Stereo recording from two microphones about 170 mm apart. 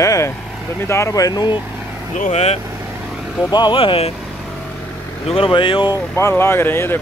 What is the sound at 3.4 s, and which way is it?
Speech, 25° left (ahead or behind).